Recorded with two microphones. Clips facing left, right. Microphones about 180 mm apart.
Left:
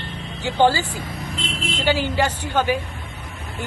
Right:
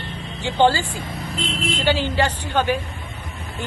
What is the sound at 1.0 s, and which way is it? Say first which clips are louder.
Speech: right 2 dB; 30° right (ahead or behind).